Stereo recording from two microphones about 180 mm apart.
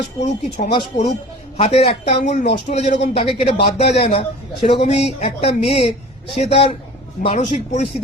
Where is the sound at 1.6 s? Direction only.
35° left (ahead or behind).